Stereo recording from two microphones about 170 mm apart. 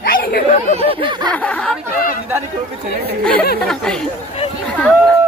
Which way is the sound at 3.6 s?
5° left (ahead or behind).